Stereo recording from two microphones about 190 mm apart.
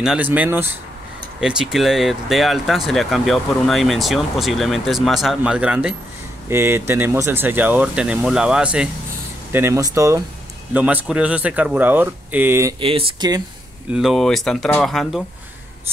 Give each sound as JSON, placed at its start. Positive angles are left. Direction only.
{"t": 0.0, "sound": "speech", "side_deg": -5}
{"t": 12.8, "sound": "speech", "side_deg": -25}
{"t": 13.9, "sound": "speech", "side_deg": 0}